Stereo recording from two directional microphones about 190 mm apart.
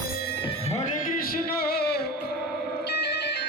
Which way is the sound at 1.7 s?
55° left (ahead or behind).